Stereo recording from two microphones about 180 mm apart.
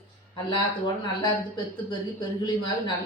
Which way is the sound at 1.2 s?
25° left (ahead or behind).